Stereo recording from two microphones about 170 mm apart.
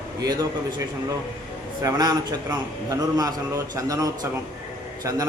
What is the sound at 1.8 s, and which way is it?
A man's voice, 25° right (ahead or behind).